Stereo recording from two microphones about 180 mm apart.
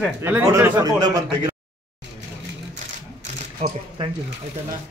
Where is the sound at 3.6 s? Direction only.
40° right (ahead or behind).